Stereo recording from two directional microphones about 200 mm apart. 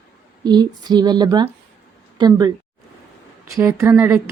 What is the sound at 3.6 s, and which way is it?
Speech, 15° right (ahead or behind).